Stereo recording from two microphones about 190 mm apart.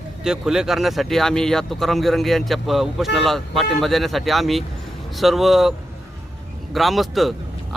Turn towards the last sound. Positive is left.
turn(degrees=0)  # may be behind; listen again after turning